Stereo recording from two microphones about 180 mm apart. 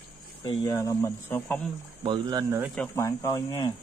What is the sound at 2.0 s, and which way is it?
Speech, 25° right (ahead or behind).